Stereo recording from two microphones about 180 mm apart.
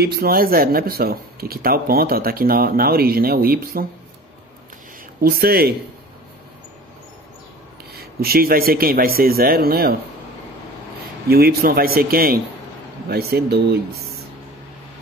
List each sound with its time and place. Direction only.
0.0 s speech: 60° right (ahead or behind)
5.2 s speech: 60° right (ahead or behind)
7.9 s speech: 60° right (ahead or behind)
11.2 s speech: 60° right (ahead or behind)